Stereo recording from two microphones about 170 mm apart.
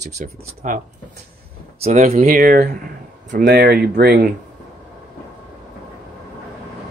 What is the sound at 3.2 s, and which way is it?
Speech, 75° right (ahead or behind).